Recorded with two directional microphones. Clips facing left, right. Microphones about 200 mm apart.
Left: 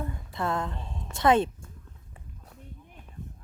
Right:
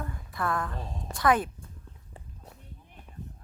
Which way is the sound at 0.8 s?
40° right (ahead or behind).